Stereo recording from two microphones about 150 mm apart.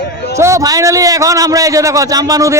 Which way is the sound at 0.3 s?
20° right (ahead or behind).